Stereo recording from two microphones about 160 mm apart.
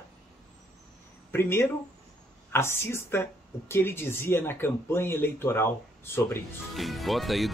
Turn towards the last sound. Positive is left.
turn(degrees=0)  # may be behind; listen again after turning